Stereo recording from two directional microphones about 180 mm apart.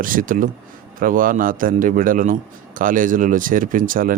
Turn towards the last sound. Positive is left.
turn(degrees=-50)  # may be behind; listen again after turning